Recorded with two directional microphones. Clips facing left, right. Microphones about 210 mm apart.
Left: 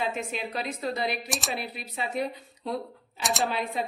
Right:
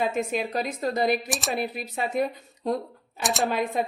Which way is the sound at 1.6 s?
50° right (ahead or behind).